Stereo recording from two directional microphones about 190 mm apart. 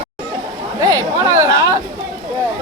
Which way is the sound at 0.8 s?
15° right (ahead or behind).